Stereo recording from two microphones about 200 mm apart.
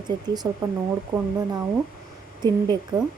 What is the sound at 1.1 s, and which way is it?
Speech, 5° right (ahead or behind).